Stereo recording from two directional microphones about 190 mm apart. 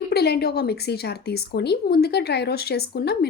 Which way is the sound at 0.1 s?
60° left (ahead or behind).